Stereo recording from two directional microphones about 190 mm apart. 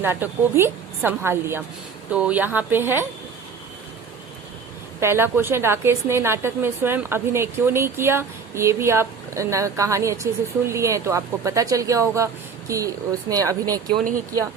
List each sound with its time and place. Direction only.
0.0 s a woman's voice: 10° right (ahead or behind)
4.9 s a woman's voice: 15° right (ahead or behind)